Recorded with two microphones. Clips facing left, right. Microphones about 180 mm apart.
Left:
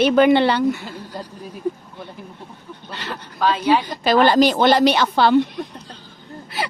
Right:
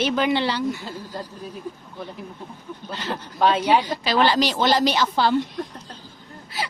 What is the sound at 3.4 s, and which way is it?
Speech, 25° right (ahead or behind).